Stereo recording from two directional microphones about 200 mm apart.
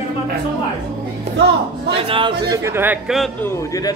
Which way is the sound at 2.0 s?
25° right (ahead or behind).